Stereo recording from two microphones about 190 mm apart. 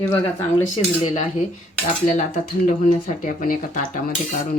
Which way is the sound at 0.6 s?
35° left (ahead or behind).